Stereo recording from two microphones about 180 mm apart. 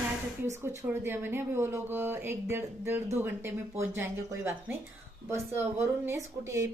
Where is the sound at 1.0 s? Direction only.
10° right (ahead or behind).